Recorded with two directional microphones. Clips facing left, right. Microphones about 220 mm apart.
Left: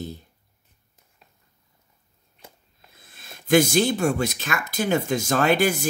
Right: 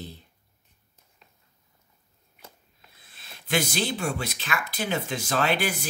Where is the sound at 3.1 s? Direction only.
45° left (ahead or behind).